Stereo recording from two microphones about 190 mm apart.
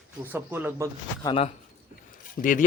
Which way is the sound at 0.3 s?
10° right (ahead or behind).